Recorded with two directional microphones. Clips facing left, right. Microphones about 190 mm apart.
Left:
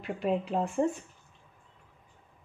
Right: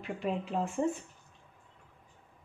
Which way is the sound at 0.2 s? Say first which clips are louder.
Left 4 dB; 35° left (ahead or behind).